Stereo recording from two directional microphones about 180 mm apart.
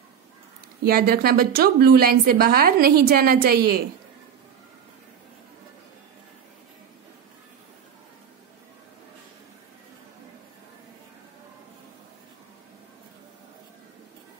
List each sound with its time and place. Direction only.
0.8 s a woman's voice: 55° right (ahead or behind)